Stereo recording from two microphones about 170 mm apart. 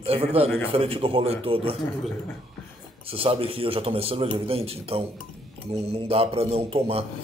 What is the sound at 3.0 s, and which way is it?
A man's voice, 35° right (ahead or behind).